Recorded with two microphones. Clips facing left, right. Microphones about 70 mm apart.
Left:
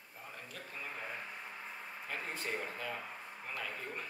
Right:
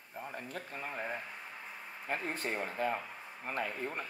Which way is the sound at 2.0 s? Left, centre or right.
Right.